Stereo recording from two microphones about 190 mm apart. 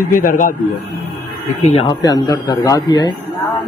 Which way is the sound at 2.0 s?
20° left (ahead or behind).